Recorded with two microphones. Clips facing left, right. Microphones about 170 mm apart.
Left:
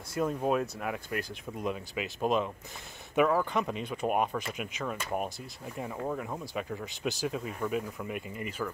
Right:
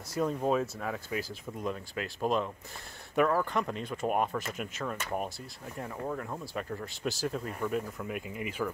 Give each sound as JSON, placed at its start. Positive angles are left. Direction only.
{"t": 0.1, "sound": "speech", "side_deg": 0}